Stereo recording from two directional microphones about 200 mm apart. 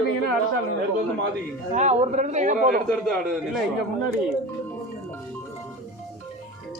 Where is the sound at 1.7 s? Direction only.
35° right (ahead or behind).